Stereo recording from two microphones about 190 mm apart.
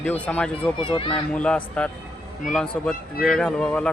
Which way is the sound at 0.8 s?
25° left (ahead or behind).